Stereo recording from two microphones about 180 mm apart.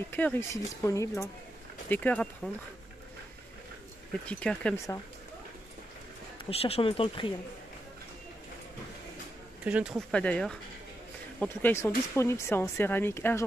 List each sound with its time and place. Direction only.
0.1 s speech: 10° left (ahead or behind)
4.3 s speech: 5° left (ahead or behind)
6.5 s speech: 35° left (ahead or behind)
9.7 s speech: 5° right (ahead or behind)
10.1 s speech: 5° left (ahead or behind)